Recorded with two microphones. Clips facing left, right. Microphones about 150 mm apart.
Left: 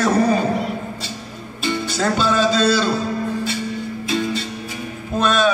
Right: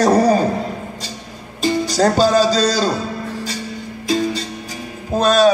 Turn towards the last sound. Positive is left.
turn(degrees=-40)  # may be behind; listen again after turning